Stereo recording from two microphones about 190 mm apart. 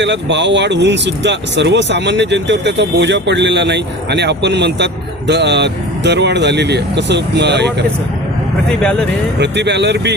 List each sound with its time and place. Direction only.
0.0 s speech: 70° right (ahead or behind)
8.8 s speech: 5° left (ahead or behind)
9.4 s speech: 65° right (ahead or behind)